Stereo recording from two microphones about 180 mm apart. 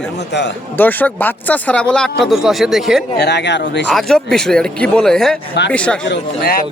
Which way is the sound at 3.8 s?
Centre (ahead or behind).